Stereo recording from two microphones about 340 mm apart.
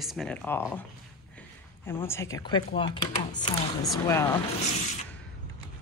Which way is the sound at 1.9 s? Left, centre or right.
Centre.